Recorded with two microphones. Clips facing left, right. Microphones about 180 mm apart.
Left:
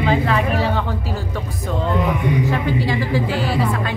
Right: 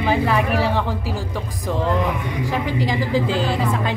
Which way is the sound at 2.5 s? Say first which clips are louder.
Left 2 dB; 15° right (ahead or behind).